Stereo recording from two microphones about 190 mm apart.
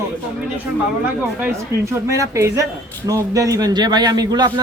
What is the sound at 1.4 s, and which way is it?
A man's voice, 10° right (ahead or behind).